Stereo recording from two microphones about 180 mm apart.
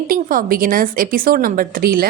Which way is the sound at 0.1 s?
50° right (ahead or behind).